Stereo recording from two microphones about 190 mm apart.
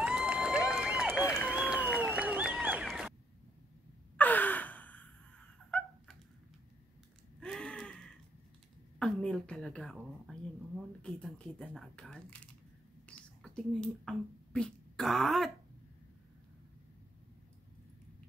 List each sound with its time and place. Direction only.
0.0 s crowd: 5° right (ahead or behind)
0.7 s run: 5° right (ahead or behind)
1.2 s a sound: 15° left (ahead or behind)
1.5 s a sound: 5° right (ahead or behind)
4.2 s sigh: 10° left (ahead or behind)
5.7 s dog: 5° left (ahead or behind)
7.3 s gasp: 5° left (ahead or behind)
9.0 s a sound: 5° left (ahead or behind)
9.9 s speech: centre (ahead or behind)